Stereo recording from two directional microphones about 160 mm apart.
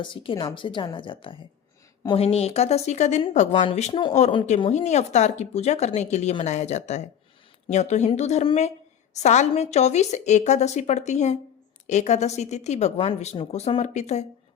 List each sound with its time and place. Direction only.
0.0 s a woman's voice: 30° left (ahead or behind)